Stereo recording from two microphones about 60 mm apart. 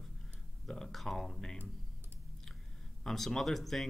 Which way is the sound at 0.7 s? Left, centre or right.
Centre.